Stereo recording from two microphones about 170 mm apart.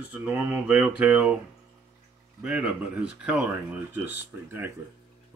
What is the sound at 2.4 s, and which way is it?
A man's voice, 5° right (ahead or behind).